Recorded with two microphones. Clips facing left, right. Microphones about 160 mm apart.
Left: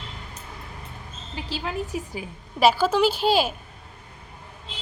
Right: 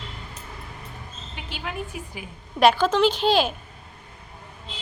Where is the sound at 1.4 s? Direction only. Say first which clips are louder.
Left 4 dB; 30° left (ahead or behind).